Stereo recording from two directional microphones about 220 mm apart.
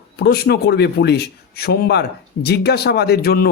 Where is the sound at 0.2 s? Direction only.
45° left (ahead or behind).